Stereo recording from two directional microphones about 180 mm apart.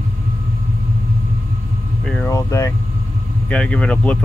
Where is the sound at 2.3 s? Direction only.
15° left (ahead or behind).